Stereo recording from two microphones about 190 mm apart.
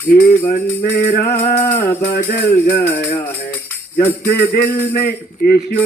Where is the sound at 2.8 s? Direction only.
10° left (ahead or behind).